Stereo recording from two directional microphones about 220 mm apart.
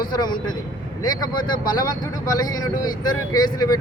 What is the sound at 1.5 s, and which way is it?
Speech, 40° left (ahead or behind).